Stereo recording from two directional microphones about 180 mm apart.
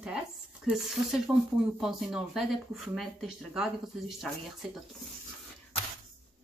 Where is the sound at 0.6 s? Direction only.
5° right (ahead or behind).